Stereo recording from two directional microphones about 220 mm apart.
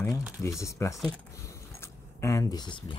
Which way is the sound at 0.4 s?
15° left (ahead or behind).